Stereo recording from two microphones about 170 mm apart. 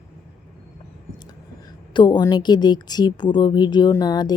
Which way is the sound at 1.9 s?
25° left (ahead or behind).